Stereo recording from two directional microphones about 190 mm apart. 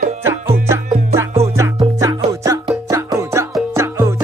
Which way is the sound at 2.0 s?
15° right (ahead or behind).